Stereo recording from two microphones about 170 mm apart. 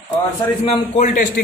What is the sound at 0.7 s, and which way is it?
Speech, 50° left (ahead or behind).